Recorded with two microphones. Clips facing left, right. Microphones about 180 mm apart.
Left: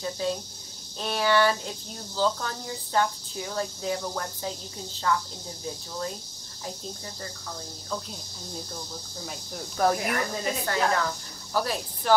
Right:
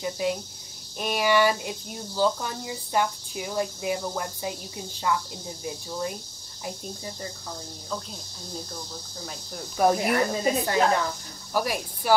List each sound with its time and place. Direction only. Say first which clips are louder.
0.0 s speech: right 2 dB; 15° right (ahead or behind)
9.8 s speech: right 3 dB; 20° right (ahead or behind)